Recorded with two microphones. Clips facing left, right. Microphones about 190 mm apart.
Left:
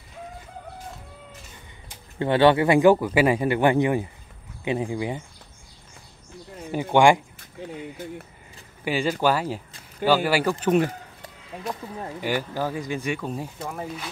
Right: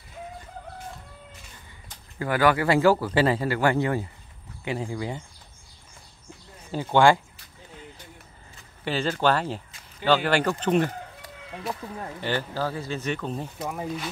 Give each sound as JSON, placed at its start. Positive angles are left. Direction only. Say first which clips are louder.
{"t": 2.1, "sound": "a man's voice", "louder": "left 4 dB", "side_deg": 25}
{"t": 6.7, "sound": "speech", "louder": "left 2 dB", "side_deg": 15}
{"t": 8.8, "sound": "speech", "louder": "left 1 dB", "side_deg": 10}
{"t": 12.0, "sound": "speech", "louder": "left 3 dB", "side_deg": 10}
{"t": 13.6, "sound": "speech", "louder": "right 2 dB", "side_deg": -10}